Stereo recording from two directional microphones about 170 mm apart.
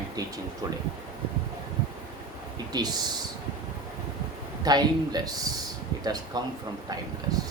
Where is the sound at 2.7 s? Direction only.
25° right (ahead or behind).